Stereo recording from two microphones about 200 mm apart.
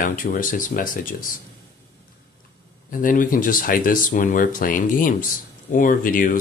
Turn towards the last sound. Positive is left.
turn(degrees=45)  # may be behind; listen again after turning